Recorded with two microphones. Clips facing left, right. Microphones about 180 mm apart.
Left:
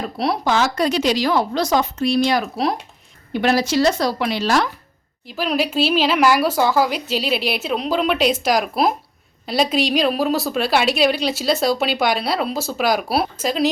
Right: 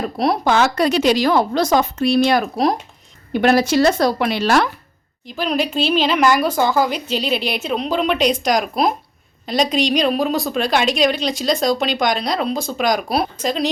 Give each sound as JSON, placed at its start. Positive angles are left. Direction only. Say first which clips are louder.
{"t": 0.0, "sound": "a woman's voice", "louder": "right 3 dB", "side_deg": -45}
{"t": 5.2, "sound": "a woman's voice", "louder": "right 1 dB", "side_deg": 5}